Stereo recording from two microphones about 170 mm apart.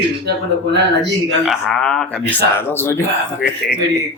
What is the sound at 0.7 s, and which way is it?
Speech, 90° right.